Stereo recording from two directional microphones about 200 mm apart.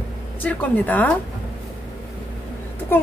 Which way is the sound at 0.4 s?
5° left (ahead or behind).